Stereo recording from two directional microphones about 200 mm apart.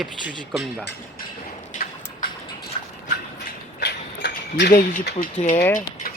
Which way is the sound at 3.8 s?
55° left (ahead or behind).